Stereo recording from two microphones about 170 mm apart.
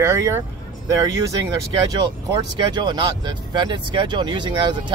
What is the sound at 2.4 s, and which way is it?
Speech, 25° right (ahead or behind).